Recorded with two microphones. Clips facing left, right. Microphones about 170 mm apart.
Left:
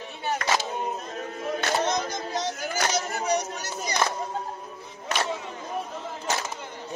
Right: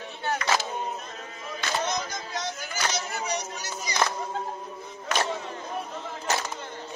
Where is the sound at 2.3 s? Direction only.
45° left (ahead or behind).